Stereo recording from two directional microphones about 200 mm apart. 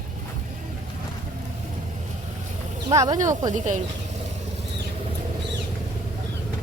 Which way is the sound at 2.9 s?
20° right (ahead or behind).